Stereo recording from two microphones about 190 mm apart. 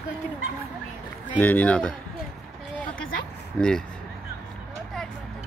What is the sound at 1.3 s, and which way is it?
Speech, 10° left (ahead or behind).